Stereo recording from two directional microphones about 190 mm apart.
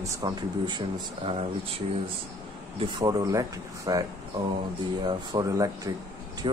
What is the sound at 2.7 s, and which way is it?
Speech, 25° right (ahead or behind).